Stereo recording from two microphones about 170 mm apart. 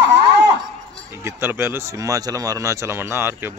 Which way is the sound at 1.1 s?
15° right (ahead or behind).